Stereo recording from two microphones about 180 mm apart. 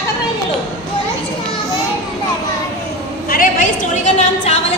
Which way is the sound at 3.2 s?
55° left (ahead or behind).